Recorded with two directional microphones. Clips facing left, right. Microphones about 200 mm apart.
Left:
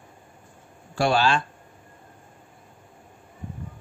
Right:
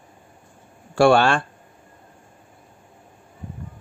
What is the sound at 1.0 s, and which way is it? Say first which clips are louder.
Speech: right 6 dB; 70° right (ahead or behind).